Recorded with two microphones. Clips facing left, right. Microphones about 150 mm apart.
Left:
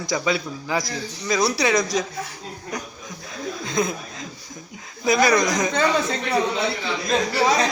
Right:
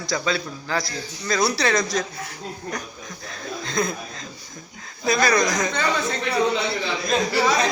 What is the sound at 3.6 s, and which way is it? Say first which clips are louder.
A man's voice: left 1 dB; 10° left (ahead or behind).